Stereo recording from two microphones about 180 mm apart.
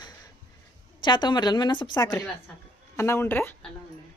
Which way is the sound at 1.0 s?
25° left (ahead or behind).